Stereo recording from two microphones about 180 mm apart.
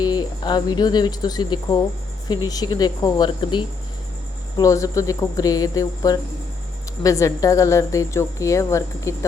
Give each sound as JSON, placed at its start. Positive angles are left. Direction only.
{"t": 0.0, "sound": "a woman's voice", "side_deg": 20}